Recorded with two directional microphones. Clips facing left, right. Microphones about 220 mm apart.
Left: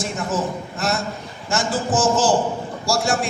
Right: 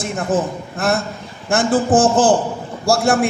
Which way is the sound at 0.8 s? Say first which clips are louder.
Right 5 dB; 55° right (ahead or behind).